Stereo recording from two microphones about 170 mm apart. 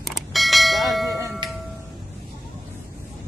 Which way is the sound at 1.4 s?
25° right (ahead or behind).